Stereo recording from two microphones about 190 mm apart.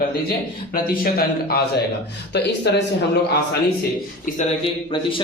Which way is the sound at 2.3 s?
65° left (ahead or behind).